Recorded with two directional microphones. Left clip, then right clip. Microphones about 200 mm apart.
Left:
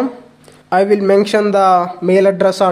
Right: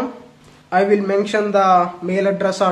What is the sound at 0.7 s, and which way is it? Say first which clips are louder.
Speech: left 4 dB; 40° left (ahead or behind).